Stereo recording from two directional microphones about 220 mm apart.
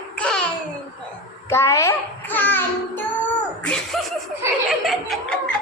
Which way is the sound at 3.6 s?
5° left (ahead or behind).